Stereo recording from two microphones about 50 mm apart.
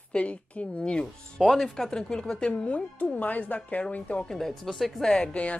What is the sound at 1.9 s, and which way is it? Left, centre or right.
Speech, centre.